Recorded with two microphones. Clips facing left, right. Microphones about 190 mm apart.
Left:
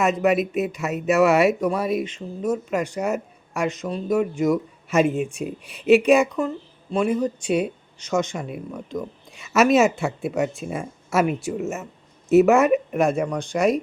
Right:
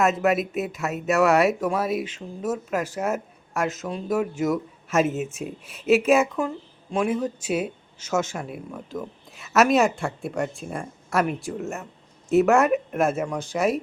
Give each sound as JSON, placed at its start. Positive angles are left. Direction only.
{"t": 0.0, "sound": "speech", "side_deg": 0}